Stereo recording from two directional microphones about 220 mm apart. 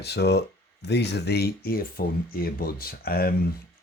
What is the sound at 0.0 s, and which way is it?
Speech, 50° left (ahead or behind).